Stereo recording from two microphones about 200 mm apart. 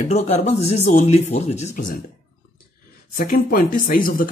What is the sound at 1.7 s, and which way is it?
Speech, 45° left (ahead or behind).